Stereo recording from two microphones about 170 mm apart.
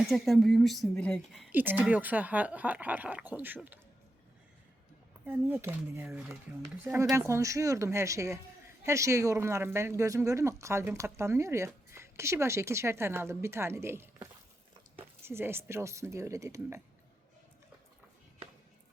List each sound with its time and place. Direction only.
0.0 s a woman's voice: centre (ahead or behind)
1.5 s speech: 10° right (ahead or behind)
5.2 s speech: 10° right (ahead or behind)